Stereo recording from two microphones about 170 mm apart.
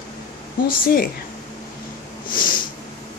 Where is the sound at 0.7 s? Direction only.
60° left (ahead or behind).